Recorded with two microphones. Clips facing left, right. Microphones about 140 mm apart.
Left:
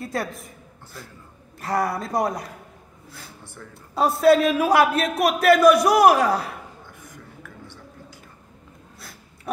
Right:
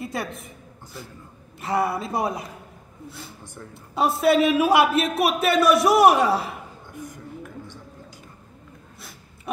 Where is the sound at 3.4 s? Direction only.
20° right (ahead or behind).